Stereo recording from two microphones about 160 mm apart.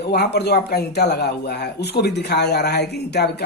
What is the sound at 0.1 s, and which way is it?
Speech, 90° left.